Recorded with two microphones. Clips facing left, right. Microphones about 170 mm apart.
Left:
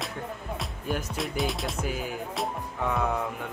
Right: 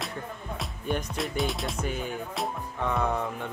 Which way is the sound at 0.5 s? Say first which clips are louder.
Right 2 dB; 5° left (ahead or behind).